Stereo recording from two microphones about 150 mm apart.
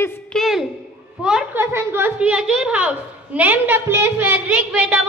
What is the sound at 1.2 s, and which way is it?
Speech, 5° right (ahead or behind).